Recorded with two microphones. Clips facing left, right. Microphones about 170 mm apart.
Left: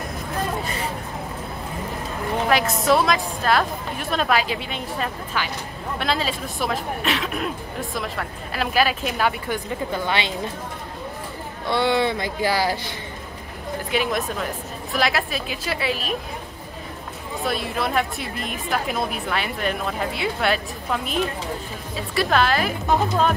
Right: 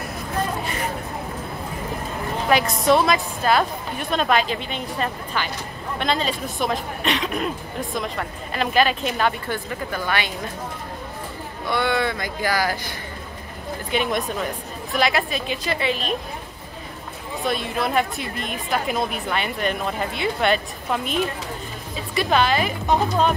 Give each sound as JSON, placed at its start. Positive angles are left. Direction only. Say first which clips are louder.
{"t": 2.5, "sound": "a woman's voice", "louder": "right 2 dB", "side_deg": 0}
{"t": 9.9, "sound": "speech", "louder": "even", "side_deg": 25}
{"t": 11.7, "sound": "speech", "louder": "left 2 dB", "side_deg": 25}
{"t": 13.9, "sound": "a woman's voice", "louder": "right 1 dB", "side_deg": 0}
{"t": 17.4, "sound": "a woman's voice", "louder": "right 1 dB", "side_deg": 0}